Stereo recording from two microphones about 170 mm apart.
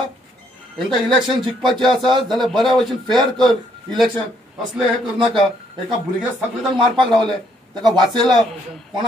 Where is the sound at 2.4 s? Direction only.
Centre (ahead or behind).